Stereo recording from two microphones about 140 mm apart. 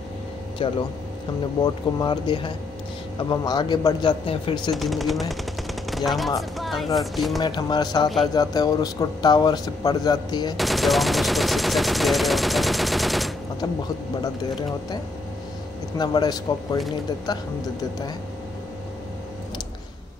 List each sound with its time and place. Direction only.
0.6 s speech: 35° left (ahead or behind)
4.7 s speech: centre (ahead or behind)
5.3 s machine gun: centre (ahead or behind)
6.6 s a sound: centre (ahead or behind)
7.0 s speech: centre (ahead or behind)
7.3 s speech: 30° left (ahead or behind)
10.6 s gunshot: centre (ahead or behind)
14.2 s speech: 30° left (ahead or behind)
16.0 s speech: 30° left (ahead or behind)